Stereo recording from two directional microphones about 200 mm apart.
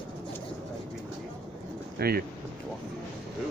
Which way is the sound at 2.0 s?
50° right (ahead or behind).